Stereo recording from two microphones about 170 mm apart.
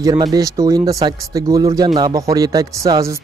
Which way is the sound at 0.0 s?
25° right (ahead or behind).